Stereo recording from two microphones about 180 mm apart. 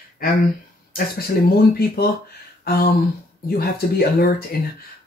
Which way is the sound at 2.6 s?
55° left (ahead or behind).